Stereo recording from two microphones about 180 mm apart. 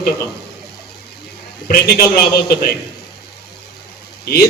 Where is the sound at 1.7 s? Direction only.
55° left (ahead or behind).